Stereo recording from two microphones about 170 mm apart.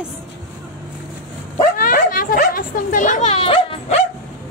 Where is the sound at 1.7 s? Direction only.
55° left (ahead or behind); by 4.0 s 35° left (ahead or behind).